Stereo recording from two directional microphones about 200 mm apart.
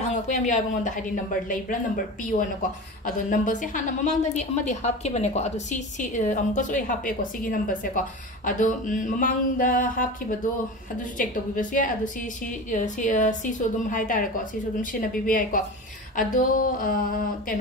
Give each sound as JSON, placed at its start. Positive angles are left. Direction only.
{"t": 0.1, "sound": "a woman's voice", "side_deg": 40}
{"t": 3.1, "sound": "a woman's voice", "side_deg": 40}
{"t": 11.1, "sound": "a woman's voice", "side_deg": 40}
{"t": 16.2, "sound": "a sound", "side_deg": 40}